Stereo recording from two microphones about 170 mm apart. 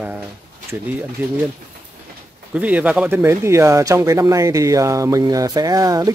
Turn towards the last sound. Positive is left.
turn(degrees=-20)  # may be behind; listen again after turning